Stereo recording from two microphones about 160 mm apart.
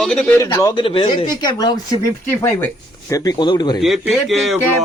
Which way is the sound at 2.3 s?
15° left (ahead or behind).